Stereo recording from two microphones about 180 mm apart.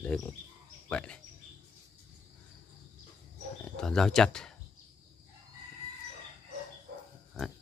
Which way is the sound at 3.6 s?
5° left (ahead or behind).